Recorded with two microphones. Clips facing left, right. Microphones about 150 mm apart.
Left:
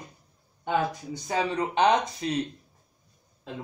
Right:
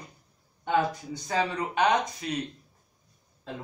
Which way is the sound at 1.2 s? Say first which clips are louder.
Left 1 dB; 20° left (ahead or behind).